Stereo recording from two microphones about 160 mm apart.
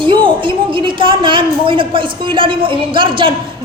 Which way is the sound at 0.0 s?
30° right (ahead or behind).